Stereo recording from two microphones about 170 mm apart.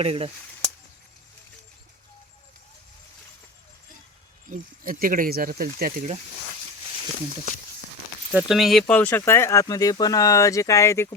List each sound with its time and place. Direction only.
0.0 s speech: 35° right (ahead or behind)
4.4 s speech: 55° right (ahead or behind)
8.3 s speech: 5° right (ahead or behind); by 11.1 s 15° left (ahead or behind)